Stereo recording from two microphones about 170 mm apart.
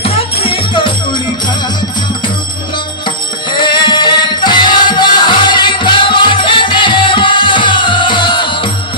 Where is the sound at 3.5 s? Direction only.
25° left (ahead or behind).